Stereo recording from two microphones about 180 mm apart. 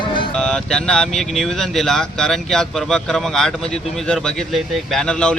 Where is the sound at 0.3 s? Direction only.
5° left (ahead or behind).